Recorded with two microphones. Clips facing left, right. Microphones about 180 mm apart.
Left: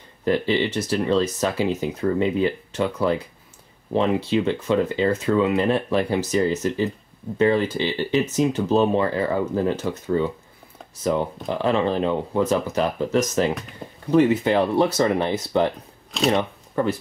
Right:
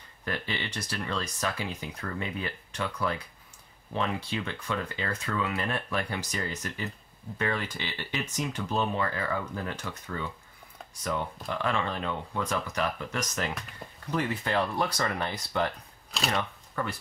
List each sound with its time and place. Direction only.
0.2 s speech: 25° left (ahead or behind)
11.4 s speech: 25° left (ahead or behind)
13.8 s a sound: centre (ahead or behind)
14.1 s speech: 25° left (ahead or behind)